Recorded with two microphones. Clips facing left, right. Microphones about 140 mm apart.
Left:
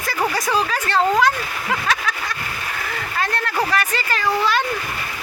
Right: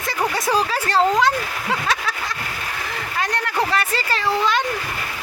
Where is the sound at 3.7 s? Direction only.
30° right (ahead or behind).